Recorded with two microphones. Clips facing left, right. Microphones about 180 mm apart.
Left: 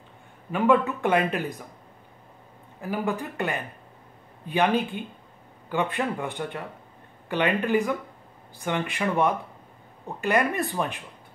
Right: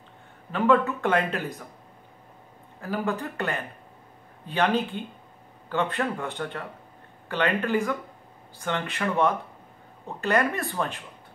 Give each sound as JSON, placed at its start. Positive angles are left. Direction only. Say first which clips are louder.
{"t": 0.5, "sound": "speech", "louder": "even", "side_deg": 15}
{"t": 2.8, "sound": "speech", "louder": "even", "side_deg": 15}